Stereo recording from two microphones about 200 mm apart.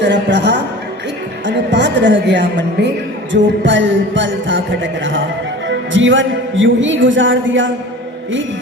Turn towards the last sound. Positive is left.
turn(degrees=-70)  # may be behind; listen again after turning